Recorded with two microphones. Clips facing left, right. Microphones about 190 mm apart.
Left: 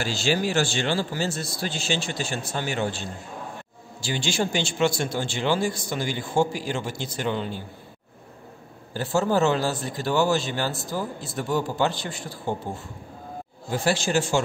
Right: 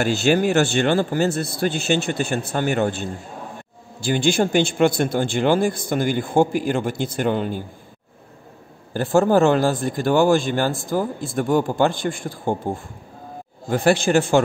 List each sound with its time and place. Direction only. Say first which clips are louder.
0.0 s a man's voice: right 7 dB; 60° right (ahead or behind)
8.9 s a man's voice: right 6 dB; 55° right (ahead or behind)